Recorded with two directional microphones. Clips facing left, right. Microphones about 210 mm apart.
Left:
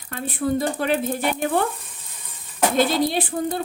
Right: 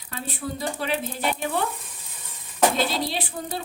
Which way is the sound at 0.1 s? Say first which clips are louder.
Left 9 dB; 50° left (ahead or behind).